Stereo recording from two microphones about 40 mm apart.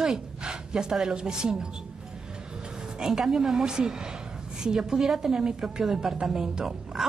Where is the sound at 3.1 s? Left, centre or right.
Centre.